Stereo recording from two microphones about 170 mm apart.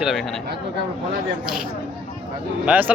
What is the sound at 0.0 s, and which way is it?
Speech, centre (ahead or behind).